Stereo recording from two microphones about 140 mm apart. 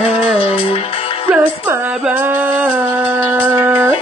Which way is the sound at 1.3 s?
10° right (ahead or behind).